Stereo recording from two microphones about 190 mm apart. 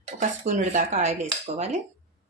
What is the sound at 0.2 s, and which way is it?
Speech, 40° right (ahead or behind).